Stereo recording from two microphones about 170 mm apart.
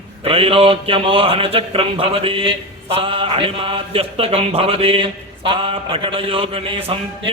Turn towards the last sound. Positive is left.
turn(degrees=-35)  # may be behind; listen again after turning